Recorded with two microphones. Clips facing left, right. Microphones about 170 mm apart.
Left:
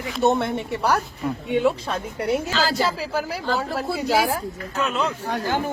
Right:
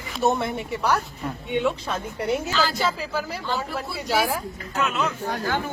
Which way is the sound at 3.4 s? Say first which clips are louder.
Left 4 dB; 40° left (ahead or behind).